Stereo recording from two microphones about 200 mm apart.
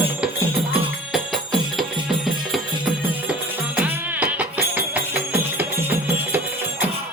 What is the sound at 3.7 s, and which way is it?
Music, 5° right (ahead or behind).